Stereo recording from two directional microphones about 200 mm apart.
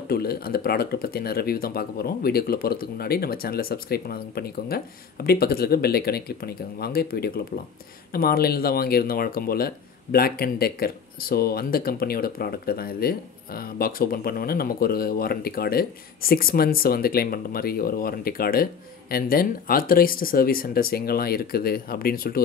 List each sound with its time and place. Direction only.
0.1 s speech: 50° left (ahead or behind)